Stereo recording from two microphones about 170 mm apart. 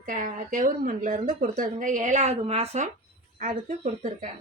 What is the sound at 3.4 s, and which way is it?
Speech, 55° right (ahead or behind).